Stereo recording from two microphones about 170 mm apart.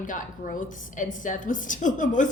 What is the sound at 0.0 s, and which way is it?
A woman's voice, 50° left (ahead or behind).